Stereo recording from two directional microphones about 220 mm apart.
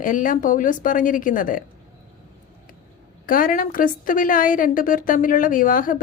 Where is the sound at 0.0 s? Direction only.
35° left (ahead or behind).